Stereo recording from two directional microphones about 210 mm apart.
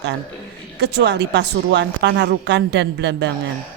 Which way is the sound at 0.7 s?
55° right (ahead or behind).